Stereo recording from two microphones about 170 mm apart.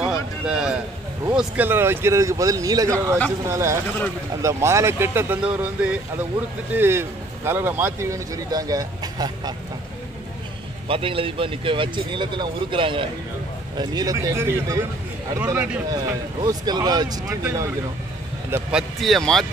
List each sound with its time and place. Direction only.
0.5 s a man's voice: 5° right (ahead or behind)
6.7 s speech: 15° right (ahead or behind)
10.9 s speech: 30° right (ahead or behind); by 15.8 s 10° right (ahead or behind)
15.9 s speech: 20° right (ahead or behind)
18.5 s speech: 5° right (ahead or behind)